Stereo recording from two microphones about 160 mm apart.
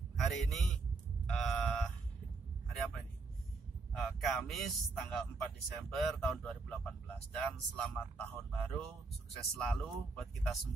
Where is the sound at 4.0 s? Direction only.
Centre (ahead or behind).